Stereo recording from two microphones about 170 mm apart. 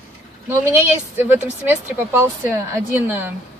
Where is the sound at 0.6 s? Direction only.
10° right (ahead or behind).